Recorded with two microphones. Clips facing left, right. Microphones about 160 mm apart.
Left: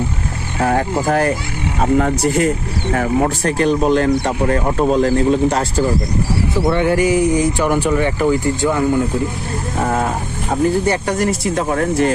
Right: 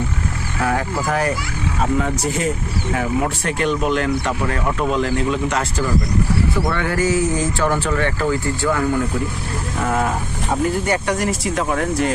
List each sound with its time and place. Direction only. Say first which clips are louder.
0.6 s speech: left 5 dB; 40° left (ahead or behind); by 2.5 s 60° left (ahead or behind)
2.9 s speech: left 5 dB; 45° left (ahead or behind)
6.7 s speech: left 9 dB; 20° left (ahead or behind)
10.8 s speech: left 3 dB; 30° left (ahead or behind)
11.5 s speech: left 3 dB; 40° left (ahead or behind)